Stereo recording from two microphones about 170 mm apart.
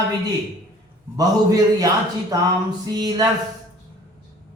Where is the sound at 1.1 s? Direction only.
20° right (ahead or behind).